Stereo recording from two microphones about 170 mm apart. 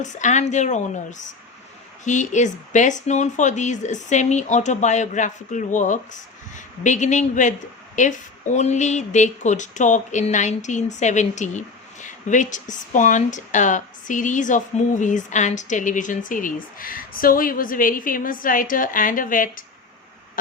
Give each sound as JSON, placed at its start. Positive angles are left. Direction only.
{"t": 0.0, "sound": "speech", "side_deg": 45}